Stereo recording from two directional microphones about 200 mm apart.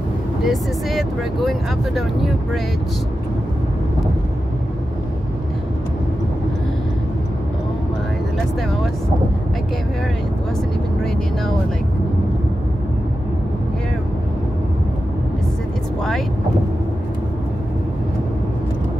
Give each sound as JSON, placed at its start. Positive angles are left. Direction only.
{"t": 0.4, "sound": "speech", "side_deg": 0}